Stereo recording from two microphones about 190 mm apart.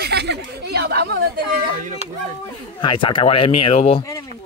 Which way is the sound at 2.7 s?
25° left (ahead or behind).